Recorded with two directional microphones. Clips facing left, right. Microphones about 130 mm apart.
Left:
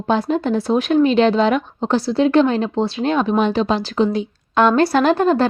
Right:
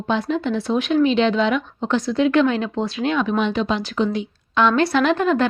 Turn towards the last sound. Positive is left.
turn(degrees=35)  # may be behind; listen again after turning